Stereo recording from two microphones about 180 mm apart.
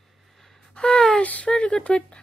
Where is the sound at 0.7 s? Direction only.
5° left (ahead or behind).